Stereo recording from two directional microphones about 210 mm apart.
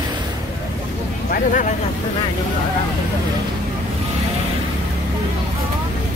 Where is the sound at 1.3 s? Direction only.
40° left (ahead or behind).